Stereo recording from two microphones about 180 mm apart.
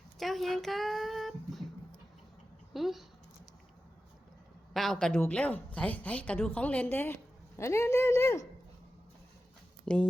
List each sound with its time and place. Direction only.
0.2 s speech: centre (ahead or behind)
2.7 s speech: centre (ahead or behind)
4.7 s a woman's voice: centre (ahead or behind)
9.8 s speech: 5° left (ahead or behind)